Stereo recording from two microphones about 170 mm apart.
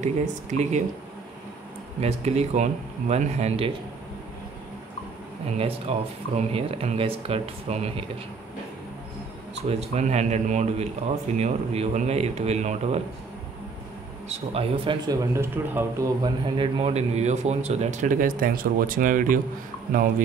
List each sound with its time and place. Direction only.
0.0 s a man's voice: 45° right (ahead or behind)
2.0 s speech: 40° right (ahead or behind)
5.6 s speech: 35° right (ahead or behind)
9.7 s speech: 40° right (ahead or behind)
14.5 s speech: 35° right (ahead or behind)
15.0 s speech: 15° right (ahead or behind)
16.2 s a man's voice: 30° right (ahead or behind); by 19.4 s 50° right (ahead or behind)